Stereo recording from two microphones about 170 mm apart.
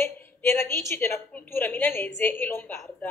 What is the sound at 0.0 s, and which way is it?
A woman's voice, 15° left (ahead or behind).